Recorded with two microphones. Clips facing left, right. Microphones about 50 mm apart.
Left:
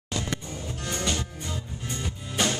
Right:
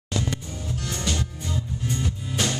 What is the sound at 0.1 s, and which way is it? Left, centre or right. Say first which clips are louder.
Music: right 2 dB; centre.